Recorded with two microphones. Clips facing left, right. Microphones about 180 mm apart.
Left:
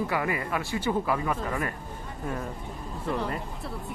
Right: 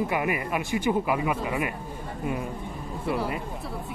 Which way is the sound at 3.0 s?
10° right (ahead or behind).